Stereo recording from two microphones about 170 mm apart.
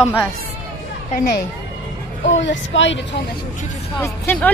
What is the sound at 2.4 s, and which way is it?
Speech, 90° left.